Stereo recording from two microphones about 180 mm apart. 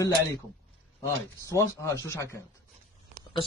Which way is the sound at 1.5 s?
15° left (ahead or behind).